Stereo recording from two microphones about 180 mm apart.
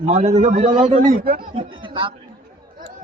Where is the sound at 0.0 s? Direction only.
35° right (ahead or behind).